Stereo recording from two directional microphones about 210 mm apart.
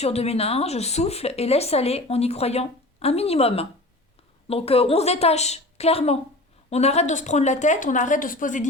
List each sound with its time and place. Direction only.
0.0 s a woman's voice: 30° left (ahead or behind)